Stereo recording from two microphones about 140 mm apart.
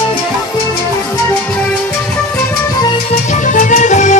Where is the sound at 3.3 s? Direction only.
65° left (ahead or behind).